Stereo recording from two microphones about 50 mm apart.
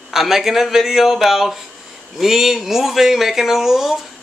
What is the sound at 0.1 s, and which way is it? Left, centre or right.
Speech, centre.